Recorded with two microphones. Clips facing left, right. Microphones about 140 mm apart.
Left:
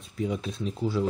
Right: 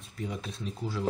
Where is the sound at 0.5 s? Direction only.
30° left (ahead or behind).